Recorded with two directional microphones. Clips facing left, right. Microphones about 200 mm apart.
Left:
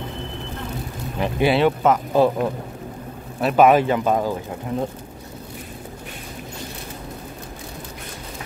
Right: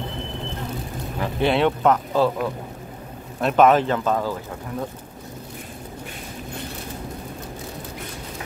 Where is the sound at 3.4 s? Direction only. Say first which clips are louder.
Left 1 dB; 5° left (ahead or behind).